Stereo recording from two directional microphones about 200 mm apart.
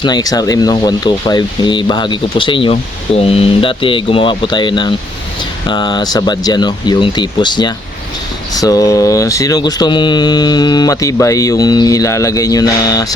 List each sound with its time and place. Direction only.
0.0 s speech: 20° left (ahead or behind)